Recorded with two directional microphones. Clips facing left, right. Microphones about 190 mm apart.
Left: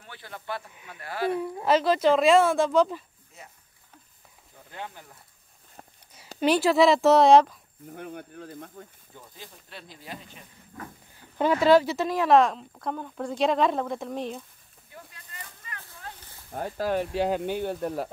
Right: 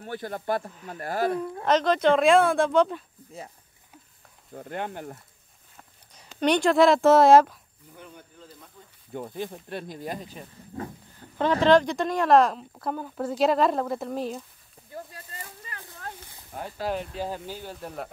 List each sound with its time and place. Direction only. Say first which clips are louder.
0.0 s speech: right 10 dB; 45° right (ahead or behind)
1.4 s speech: even; 5° left (ahead or behind)
4.6 s speech: right 8 dB; 60° right (ahead or behind)
6.4 s speech: right 1 dB; 5° left (ahead or behind)
7.9 s speech: left 8 dB; 60° left (ahead or behind)
9.1 s speech: right 18 dB; 60° right (ahead or behind); by 10.9 s 40° right (ahead or behind)
11.6 s speech: even; 5° left (ahead or behind)
15.1 s a sound: right 4 dB; 35° right (ahead or behind)
16.5 s speech: left 2 dB; 45° left (ahead or behind)
16.9 s speech: left 9 dB; 70° left (ahead or behind)